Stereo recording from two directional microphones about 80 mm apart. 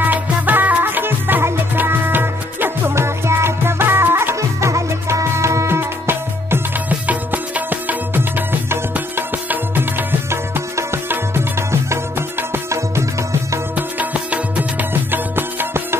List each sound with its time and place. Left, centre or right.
0.0 s music: right
13.7 s music: centre